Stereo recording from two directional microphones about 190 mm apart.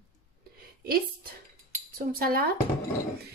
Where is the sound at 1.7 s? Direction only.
50° right (ahead or behind).